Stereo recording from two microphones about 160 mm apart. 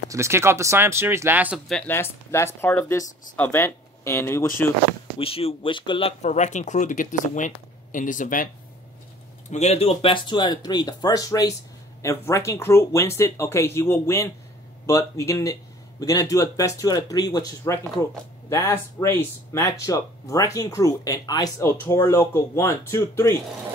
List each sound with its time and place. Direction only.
0.1 s speech: 15° right (ahead or behind)
1.7 s speech: 10° left (ahead or behind)
5.2 s speech: 35° left (ahead or behind); by 8.5 s 55° left (ahead or behind)
9.5 s speech: 45° left (ahead or behind); by 23.3 s 20° left (ahead or behind)